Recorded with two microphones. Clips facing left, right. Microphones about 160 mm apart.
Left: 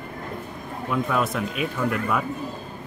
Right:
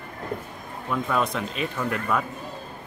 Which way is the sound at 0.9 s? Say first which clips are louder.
Left 1 dB; 5° left (ahead or behind).